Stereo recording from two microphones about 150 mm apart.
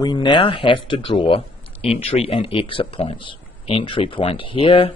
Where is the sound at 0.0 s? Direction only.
30° left (ahead or behind).